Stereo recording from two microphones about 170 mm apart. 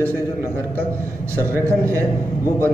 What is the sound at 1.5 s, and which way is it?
Speech, 15° right (ahead or behind).